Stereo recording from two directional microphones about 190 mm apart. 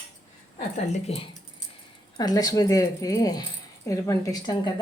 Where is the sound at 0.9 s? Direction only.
30° left (ahead or behind).